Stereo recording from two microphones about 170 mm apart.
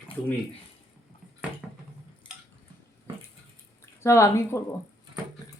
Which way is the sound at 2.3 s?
30° left (ahead or behind).